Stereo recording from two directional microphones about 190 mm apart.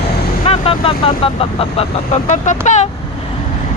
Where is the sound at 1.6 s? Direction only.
35° left (ahead or behind).